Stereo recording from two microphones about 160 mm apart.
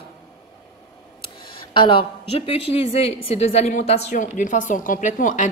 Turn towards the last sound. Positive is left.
turn(degrees=50)  # may be behind; listen again after turning